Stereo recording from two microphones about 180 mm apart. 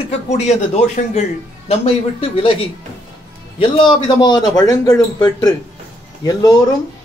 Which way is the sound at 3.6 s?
25° left (ahead or behind).